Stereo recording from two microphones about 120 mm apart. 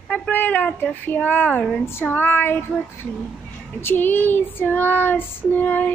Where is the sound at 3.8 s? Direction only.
15° left (ahead or behind).